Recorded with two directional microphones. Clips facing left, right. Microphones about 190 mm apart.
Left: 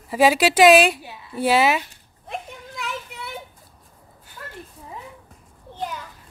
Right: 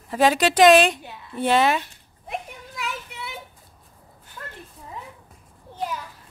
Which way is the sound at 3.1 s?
Centre (ahead or behind).